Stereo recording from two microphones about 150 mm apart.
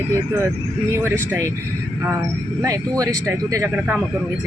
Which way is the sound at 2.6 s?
25° right (ahead or behind).